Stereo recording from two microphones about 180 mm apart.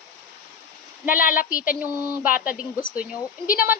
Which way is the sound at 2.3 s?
10° right (ahead or behind).